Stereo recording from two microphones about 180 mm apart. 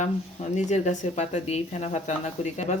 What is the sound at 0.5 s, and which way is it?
Speech, 40° left (ahead or behind).